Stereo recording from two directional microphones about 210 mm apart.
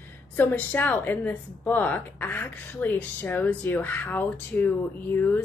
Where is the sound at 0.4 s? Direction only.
10° left (ahead or behind).